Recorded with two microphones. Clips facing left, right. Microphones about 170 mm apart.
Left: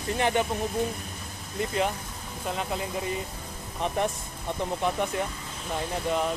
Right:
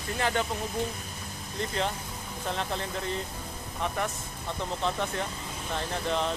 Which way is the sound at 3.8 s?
20° left (ahead or behind).